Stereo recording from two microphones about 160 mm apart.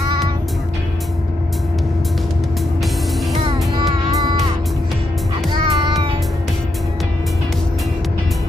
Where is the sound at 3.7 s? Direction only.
30° right (ahead or behind).